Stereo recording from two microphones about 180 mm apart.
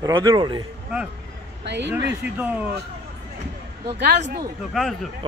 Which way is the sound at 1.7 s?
75° right (ahead or behind).